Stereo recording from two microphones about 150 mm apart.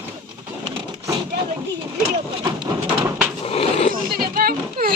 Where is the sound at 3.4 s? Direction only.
40° left (ahead or behind).